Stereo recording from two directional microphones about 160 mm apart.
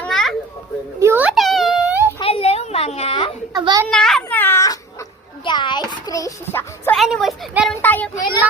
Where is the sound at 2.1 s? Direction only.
35° left (ahead or behind).